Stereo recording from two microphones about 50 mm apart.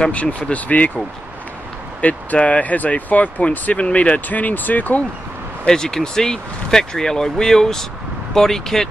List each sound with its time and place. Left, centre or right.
0.0 s speech: left
5.7 s speech: centre